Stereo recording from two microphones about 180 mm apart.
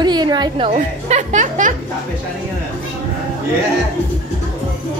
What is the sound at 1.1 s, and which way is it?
Speech, 40° right (ahead or behind).